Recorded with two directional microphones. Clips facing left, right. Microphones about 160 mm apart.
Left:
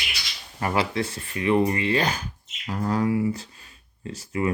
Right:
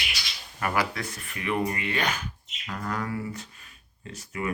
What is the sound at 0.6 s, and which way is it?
Speech, 25° left (ahead or behind).